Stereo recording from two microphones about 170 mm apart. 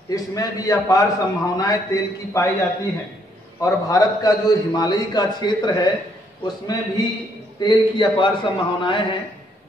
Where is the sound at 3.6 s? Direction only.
20° left (ahead or behind).